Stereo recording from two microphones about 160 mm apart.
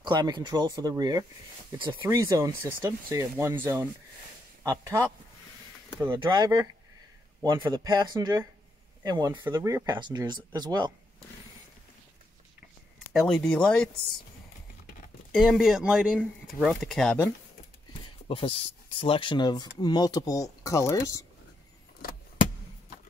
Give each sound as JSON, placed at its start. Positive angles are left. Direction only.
{"t": 0.0, "sound": "speech", "side_deg": -25}
{"t": 6.1, "sound": "speech", "side_deg": -25}
{"t": 13.1, "sound": "speech", "side_deg": 0}
{"t": 15.3, "sound": "speech", "side_deg": 0}
{"t": 18.3, "sound": "speech", "side_deg": 35}